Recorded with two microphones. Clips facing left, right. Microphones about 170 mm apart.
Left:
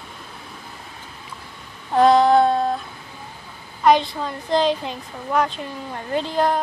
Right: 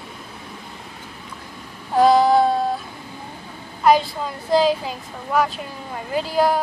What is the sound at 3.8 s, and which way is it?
A woman's voice, 5° right (ahead or behind).